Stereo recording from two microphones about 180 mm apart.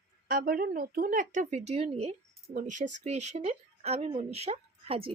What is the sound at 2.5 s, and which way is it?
Speech, 45° right (ahead or behind).